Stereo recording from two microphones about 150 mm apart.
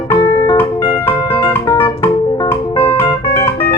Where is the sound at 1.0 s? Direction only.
15° left (ahead or behind).